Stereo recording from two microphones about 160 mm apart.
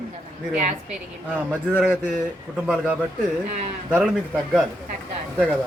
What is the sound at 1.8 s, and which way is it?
Speech, 5° right (ahead or behind).